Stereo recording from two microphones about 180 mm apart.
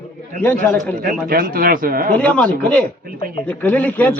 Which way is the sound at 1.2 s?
55° right (ahead or behind).